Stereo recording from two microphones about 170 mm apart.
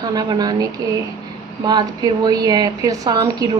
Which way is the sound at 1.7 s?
25° right (ahead or behind).